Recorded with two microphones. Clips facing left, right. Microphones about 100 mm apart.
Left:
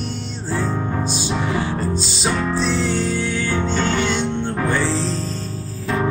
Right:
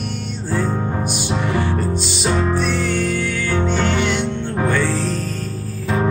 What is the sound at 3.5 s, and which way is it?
Music, 15° right (ahead or behind).